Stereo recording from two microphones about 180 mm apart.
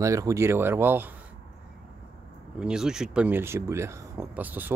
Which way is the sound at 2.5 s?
5° right (ahead or behind).